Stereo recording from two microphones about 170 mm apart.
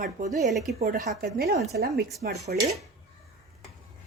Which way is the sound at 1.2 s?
65° right (ahead or behind).